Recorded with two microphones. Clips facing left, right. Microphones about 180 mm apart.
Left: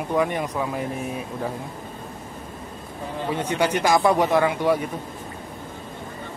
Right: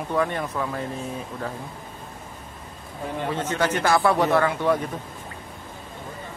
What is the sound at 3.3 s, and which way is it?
A man's voice, 10° left (ahead or behind).